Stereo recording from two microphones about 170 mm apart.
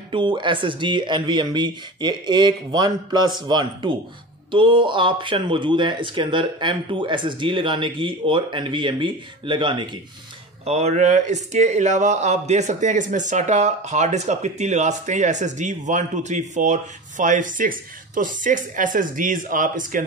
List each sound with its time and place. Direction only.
0.1 s speech: 30° right (ahead or behind)
10.6 s speech: 40° right (ahead or behind)